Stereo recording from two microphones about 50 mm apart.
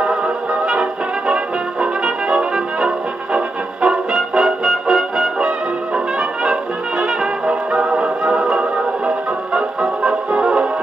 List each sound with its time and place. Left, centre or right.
0.7 s brass instrument: centre
7.7 s music: right